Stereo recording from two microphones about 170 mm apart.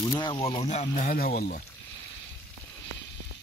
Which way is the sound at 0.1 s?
25° left (ahead or behind).